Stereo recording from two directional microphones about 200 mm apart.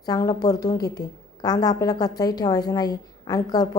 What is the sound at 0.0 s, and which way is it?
A woman's voice, 20° left (ahead or behind).